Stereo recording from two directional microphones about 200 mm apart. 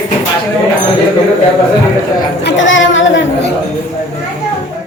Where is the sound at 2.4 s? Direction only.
65° left (ahead or behind).